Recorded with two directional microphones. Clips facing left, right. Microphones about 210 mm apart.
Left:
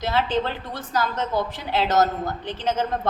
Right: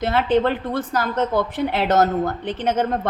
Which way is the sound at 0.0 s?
55° right (ahead or behind).